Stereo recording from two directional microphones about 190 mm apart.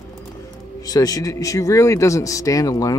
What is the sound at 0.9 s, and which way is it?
Speech, 20° left (ahead or behind).